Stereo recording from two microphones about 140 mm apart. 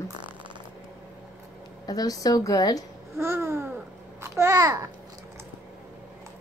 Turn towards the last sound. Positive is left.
turn(degrees=-20)  # may be behind; listen again after turning